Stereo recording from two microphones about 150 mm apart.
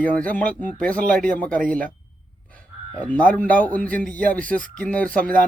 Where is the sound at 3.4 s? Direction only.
10° left (ahead or behind).